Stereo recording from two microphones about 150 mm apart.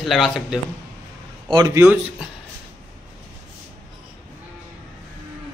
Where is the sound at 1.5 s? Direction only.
20° right (ahead or behind).